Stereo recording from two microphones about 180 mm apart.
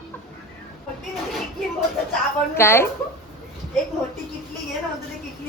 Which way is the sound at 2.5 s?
15° left (ahead or behind).